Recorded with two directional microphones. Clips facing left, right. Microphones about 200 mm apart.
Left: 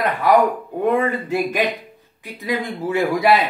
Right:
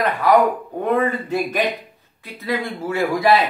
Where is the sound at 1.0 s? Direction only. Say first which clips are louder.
Left 1 dB; 10° left (ahead or behind).